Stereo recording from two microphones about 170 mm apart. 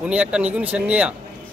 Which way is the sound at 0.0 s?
5° right (ahead or behind).